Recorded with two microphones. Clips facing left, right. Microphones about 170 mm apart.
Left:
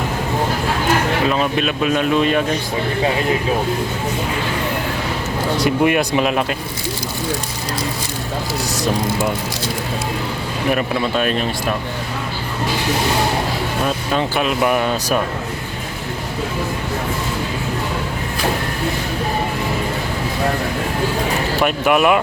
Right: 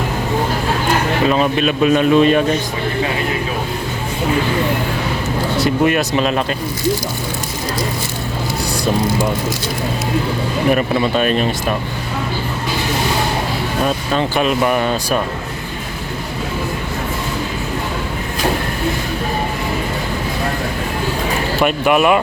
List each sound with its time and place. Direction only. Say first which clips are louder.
1.3 s speech: right 3 dB; centre (ahead or behind)
5.6 s speech: even; 15° left (ahead or behind)
10.7 s speech: right 3 dB; centre (ahead or behind)
13.8 s speech: right 2 dB; 5° left (ahead or behind)
21.6 s speech: right 2 dB; centre (ahead or behind)